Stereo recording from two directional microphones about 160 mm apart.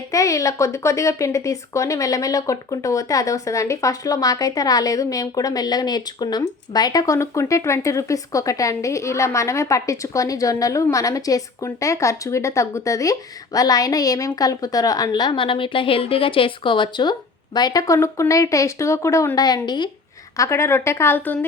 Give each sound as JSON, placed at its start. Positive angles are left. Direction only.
{"t": 0.1, "sound": "speech", "side_deg": 20}